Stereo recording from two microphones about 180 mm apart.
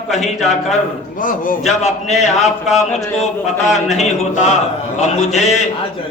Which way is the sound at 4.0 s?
40° left (ahead or behind).